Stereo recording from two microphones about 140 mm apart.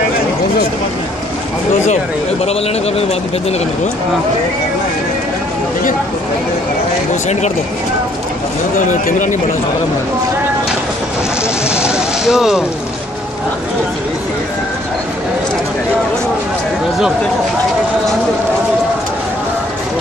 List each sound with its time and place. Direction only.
8.7 s speech: 65° left (ahead or behind)
11.7 s vehicle: 5° right (ahead or behind)